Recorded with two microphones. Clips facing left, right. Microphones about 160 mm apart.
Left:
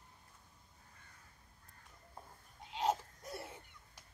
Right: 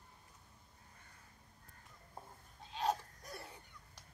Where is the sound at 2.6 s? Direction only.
20° left (ahead or behind).